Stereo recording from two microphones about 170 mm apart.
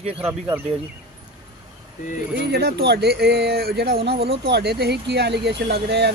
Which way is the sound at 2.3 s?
75° right (ahead or behind).